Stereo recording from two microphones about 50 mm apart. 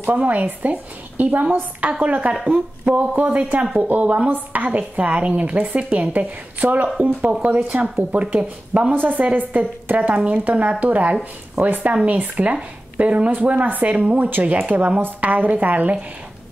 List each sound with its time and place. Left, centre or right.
0.1 s speech: right